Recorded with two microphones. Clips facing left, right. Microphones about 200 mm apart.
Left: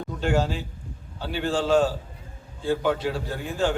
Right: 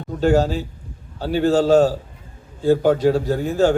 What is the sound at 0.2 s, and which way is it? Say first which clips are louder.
A man's voice: right 8 dB; 40° right (ahead or behind).